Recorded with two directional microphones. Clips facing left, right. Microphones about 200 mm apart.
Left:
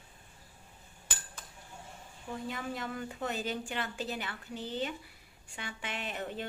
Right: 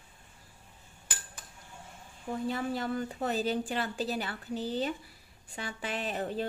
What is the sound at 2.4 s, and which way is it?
A woman's voice, 35° right (ahead or behind).